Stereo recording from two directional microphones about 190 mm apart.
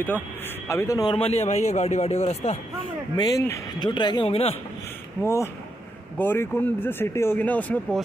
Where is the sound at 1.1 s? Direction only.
30° left (ahead or behind).